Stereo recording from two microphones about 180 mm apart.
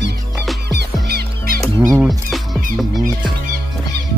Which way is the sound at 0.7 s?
65° right (ahead or behind).